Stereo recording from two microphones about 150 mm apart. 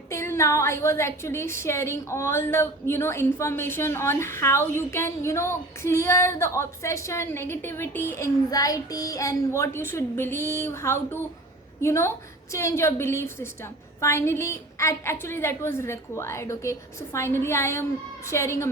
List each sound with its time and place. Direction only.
0.1 s a woman's voice: 20° left (ahead or behind)